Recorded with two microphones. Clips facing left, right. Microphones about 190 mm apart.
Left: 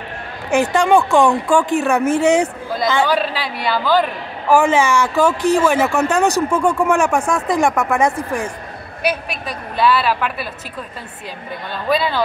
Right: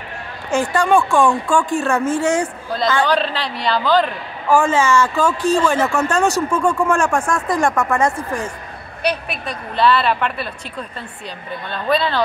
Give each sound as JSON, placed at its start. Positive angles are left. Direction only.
{"t": 0.5, "sound": "speech", "side_deg": 20}
{"t": 3.0, "sound": "a woman's voice", "side_deg": 10}
{"t": 11.9, "sound": "speech", "side_deg": 10}